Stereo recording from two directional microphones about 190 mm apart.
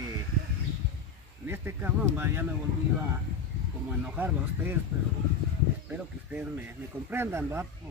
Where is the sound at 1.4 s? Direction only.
10° right (ahead or behind).